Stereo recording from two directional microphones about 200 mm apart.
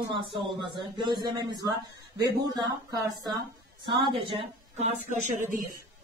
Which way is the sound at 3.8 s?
25° right (ahead or behind).